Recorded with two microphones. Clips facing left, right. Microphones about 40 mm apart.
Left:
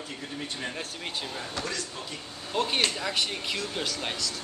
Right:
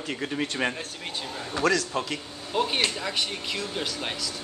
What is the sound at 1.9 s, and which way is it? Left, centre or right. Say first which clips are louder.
Speech: right 10 dB; right.